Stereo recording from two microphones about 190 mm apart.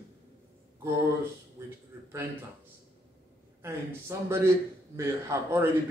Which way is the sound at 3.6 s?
15° right (ahead or behind).